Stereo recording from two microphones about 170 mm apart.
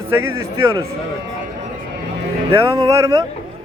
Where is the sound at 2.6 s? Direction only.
20° right (ahead or behind).